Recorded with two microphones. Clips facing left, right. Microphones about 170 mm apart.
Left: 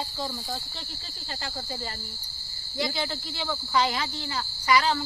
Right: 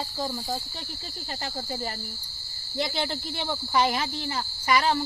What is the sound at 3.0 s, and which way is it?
Speech, 20° right (ahead or behind).